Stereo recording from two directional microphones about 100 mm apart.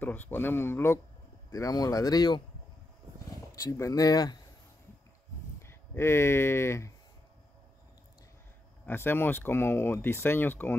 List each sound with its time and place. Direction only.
0.0 s speech: 20° left (ahead or behind)
1.5 s speech: 35° left (ahead or behind)
3.5 s speech: 30° left (ahead or behind)
5.6 s speech: 25° left (ahead or behind)
8.8 s speech: 20° left (ahead or behind)